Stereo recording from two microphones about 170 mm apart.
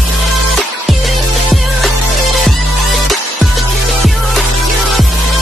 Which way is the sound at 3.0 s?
Centre (ahead or behind).